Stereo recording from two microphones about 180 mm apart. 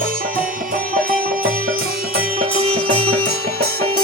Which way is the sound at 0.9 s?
50° right (ahead or behind).